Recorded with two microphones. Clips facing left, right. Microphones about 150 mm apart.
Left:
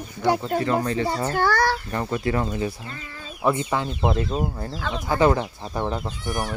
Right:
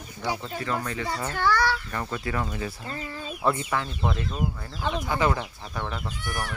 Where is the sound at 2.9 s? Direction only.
30° right (ahead or behind).